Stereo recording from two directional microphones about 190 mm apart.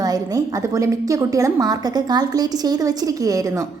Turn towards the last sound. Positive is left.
turn(degrees=-20)  # may be behind; listen again after turning